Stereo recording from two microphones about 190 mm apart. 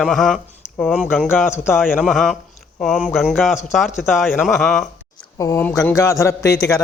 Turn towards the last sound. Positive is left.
turn(degrees=15)  # may be behind; listen again after turning